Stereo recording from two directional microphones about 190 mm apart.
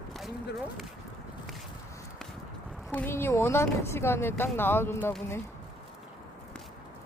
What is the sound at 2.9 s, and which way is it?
Speech, 10° left (ahead or behind).